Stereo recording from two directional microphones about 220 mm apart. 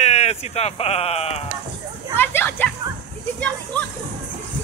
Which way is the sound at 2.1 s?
10° left (ahead or behind).